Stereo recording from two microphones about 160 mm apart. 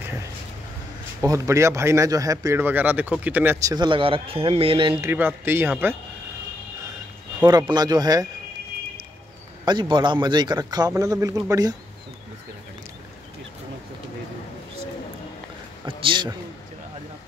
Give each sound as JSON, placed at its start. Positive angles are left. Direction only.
{"t": 1.2, "sound": "speech", "side_deg": -20}
{"t": 3.6, "sound": "speech", "side_deg": -25}
{"t": 5.0, "sound": "speech", "side_deg": -15}
{"t": 7.4, "sound": "a man's voice", "side_deg": -25}
{"t": 9.7, "sound": "a man's voice", "side_deg": -30}
{"t": 16.0, "sound": "speech", "side_deg": -30}